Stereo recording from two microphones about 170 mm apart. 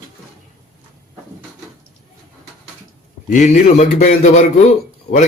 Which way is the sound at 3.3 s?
50° left (ahead or behind).